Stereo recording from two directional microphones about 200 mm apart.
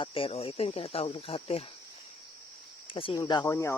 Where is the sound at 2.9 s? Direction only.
25° left (ahead or behind).